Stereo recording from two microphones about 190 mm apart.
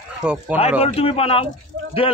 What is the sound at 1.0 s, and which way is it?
Speech, 30° left (ahead or behind).